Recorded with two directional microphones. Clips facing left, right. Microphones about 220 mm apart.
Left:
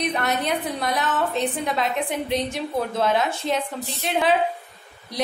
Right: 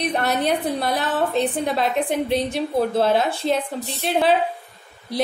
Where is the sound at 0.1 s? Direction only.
35° right (ahead or behind).